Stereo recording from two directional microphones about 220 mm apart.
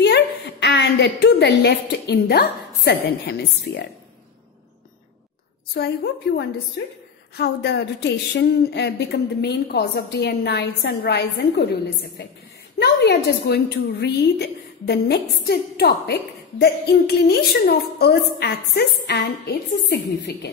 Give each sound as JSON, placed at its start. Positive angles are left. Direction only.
{"t": 0.0, "sound": "a woman's voice", "side_deg": 50}
{"t": 5.8, "sound": "a woman's voice", "side_deg": 50}
{"t": 12.7, "sound": "a woman's voice", "side_deg": 50}